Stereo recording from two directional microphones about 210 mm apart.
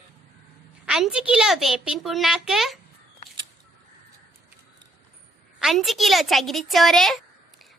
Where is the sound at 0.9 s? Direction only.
Centre (ahead or behind).